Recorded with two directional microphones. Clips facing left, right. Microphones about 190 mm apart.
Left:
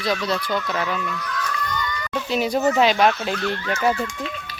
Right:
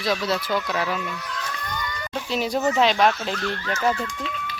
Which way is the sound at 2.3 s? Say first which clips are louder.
Left 3 dB; centre (ahead or behind).